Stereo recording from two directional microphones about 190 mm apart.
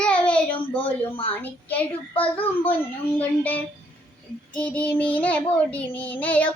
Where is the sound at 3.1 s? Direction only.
10° left (ahead or behind).